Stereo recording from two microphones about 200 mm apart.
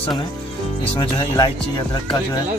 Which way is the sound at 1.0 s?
20° left (ahead or behind).